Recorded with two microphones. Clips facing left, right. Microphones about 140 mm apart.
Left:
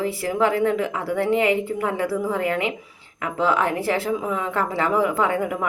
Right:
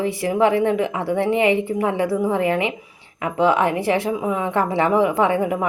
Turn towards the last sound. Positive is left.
turn(degrees=-25)  # may be behind; listen again after turning